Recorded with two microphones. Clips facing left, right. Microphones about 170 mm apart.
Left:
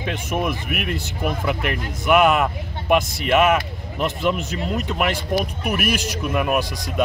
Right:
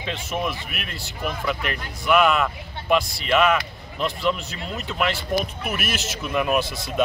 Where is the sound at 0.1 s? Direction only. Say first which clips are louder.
Left 3 dB; 15° left (ahead or behind).